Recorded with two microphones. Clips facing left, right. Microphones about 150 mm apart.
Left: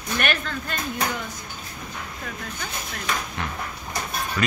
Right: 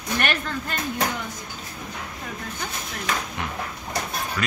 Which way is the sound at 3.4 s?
15° right (ahead or behind).